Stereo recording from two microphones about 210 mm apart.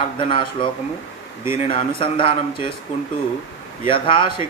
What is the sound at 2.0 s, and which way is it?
Speech, 25° left (ahead or behind).